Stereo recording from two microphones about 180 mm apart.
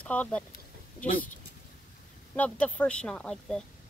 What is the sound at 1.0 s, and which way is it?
Speech, 50° left (ahead or behind).